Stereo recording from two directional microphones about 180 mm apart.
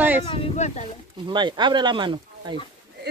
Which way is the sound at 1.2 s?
25° right (ahead or behind).